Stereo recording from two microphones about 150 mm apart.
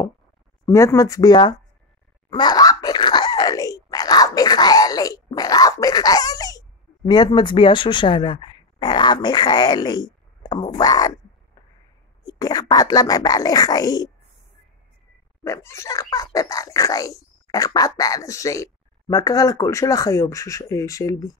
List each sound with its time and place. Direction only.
0.7 s speech: 20° left (ahead or behind)
2.2 s groan: 30° left (ahead or behind)
7.1 s speech: 30° left (ahead or behind)
12.3 s speech: 25° left (ahead or behind)
15.4 s speech: 20° left (ahead or behind)